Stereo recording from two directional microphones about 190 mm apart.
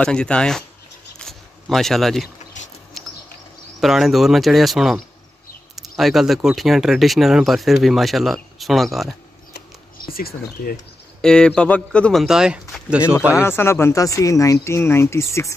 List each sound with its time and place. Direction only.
0.0 s speech: 5° left (ahead or behind)
1.1 s a sound: centre (ahead or behind)
2.9 s bird: centre (ahead or behind)
3.8 s speech: centre (ahead or behind)
10.0 s speech: 50° left (ahead or behind)
11.1 s speech: 5° left (ahead or behind)
13.4 s speech: 10° left (ahead or behind)